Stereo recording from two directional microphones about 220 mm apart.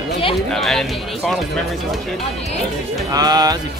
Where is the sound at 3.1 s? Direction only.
20° right (ahead or behind).